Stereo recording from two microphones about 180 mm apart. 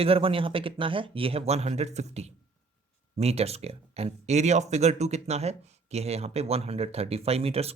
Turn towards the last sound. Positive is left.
turn(degrees=-35)  # may be behind; listen again after turning